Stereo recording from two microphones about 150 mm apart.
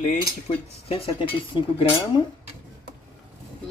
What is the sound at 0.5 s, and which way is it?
Speech, 40° left (ahead or behind).